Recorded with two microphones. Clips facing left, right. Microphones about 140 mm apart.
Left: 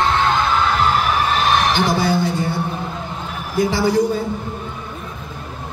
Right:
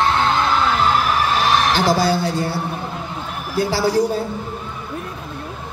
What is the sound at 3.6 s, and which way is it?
Music, 35° right (ahead or behind).